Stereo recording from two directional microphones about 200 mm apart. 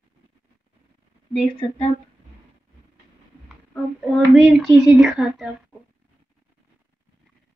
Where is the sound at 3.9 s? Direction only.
Centre (ahead or behind).